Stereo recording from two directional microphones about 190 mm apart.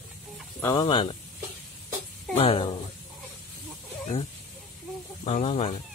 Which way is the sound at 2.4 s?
30° left (ahead or behind).